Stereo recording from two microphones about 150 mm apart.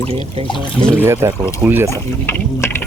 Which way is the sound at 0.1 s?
40° right (ahead or behind).